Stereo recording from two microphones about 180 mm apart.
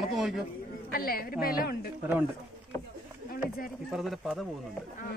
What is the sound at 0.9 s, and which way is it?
Speech, 55° left (ahead or behind).